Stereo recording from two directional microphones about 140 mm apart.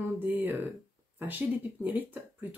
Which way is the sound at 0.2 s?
15° right (ahead or behind).